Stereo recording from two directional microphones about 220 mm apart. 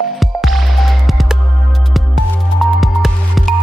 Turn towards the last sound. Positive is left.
turn(degrees=0)  # may be behind; listen again after turning